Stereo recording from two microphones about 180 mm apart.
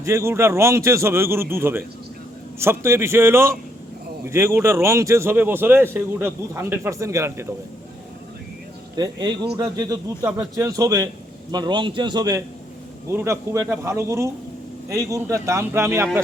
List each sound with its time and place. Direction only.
0.0 s a man's voice: 15° right (ahead or behind)
9.0 s a man's voice: 25° right (ahead or behind)